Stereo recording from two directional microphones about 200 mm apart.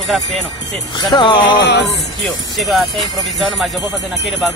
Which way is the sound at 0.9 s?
20° left (ahead or behind).